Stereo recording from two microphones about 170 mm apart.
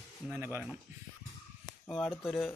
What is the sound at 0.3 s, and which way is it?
Speech, 15° right (ahead or behind).